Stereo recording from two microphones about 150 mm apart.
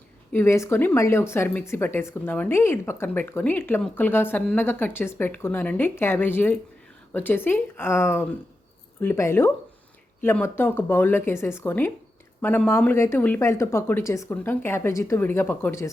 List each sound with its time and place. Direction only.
0.3 s a woman's voice: 15° left (ahead or behind)